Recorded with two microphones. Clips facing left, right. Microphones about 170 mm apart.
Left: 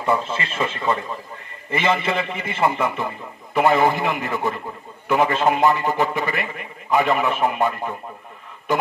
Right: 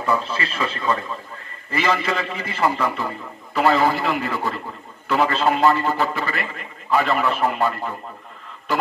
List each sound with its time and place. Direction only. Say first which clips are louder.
0.0 s a man's voice: left 1 dB; 25° left (ahead or behind)